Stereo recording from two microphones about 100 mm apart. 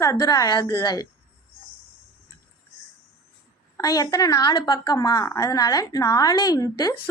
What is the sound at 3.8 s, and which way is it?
A woman's voice, 35° left (ahead or behind).